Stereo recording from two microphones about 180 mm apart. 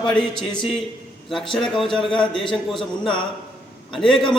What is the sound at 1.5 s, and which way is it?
Speech, centre (ahead or behind).